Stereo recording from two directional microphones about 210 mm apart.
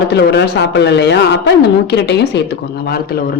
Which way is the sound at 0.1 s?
55° left (ahead or behind).